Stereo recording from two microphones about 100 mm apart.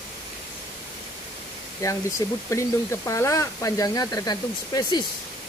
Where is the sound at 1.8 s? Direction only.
35° left (ahead or behind).